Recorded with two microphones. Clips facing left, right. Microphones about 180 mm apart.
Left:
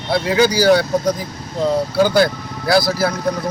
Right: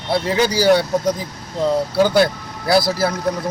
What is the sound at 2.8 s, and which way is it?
Speech, 25° right (ahead or behind).